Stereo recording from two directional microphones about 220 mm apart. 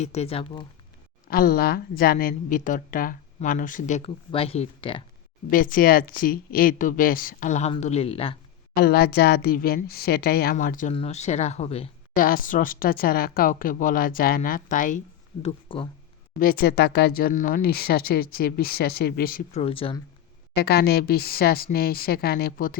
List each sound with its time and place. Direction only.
0.0 s speech: 30° left (ahead or behind)
1.3 s a woman's voice: 45° left (ahead or behind); by 5.0 s 25° left (ahead or behind)
5.5 s a woman's voice: 40° left (ahead or behind)
8.7 s a woman's voice: 45° left (ahead or behind); by 12.2 s 30° left (ahead or behind)
12.2 s a woman's voice: 40° left (ahead or behind)
16.4 s speech: 45° left (ahead or behind)
19.5 s speech: 25° left (ahead or behind)
20.6 s speech: 45° left (ahead or behind)